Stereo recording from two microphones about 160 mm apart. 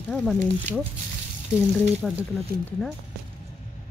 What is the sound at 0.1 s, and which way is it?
Speech, 5° left (ahead or behind).